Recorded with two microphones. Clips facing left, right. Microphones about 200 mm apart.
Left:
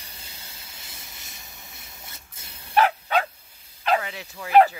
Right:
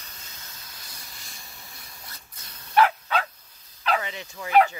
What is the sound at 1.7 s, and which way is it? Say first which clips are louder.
Dog: left 1 dB; 25° left (ahead or behind).